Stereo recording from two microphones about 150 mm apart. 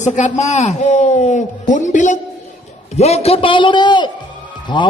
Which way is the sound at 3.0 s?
45° left (ahead or behind).